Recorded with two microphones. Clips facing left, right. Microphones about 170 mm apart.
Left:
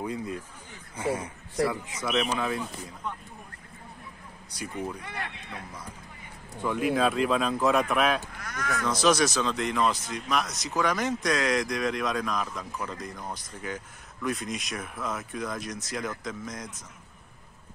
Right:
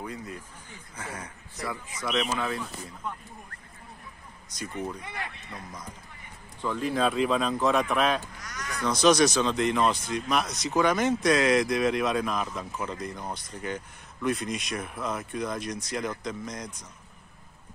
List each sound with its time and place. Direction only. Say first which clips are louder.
0.9 s a man's voice: left 10 dB; 25° left (ahead or behind)
1.7 s speech: left 2 dB; 10° left (ahead or behind)
4.5 s speech: even; 10° left (ahead or behind)
6.6 s speech: left 1 dB; 10° left (ahead or behind)
8.4 s speech: left 5 dB; 55° left (ahead or behind)
8.8 s speech: right 3 dB; centre (ahead or behind)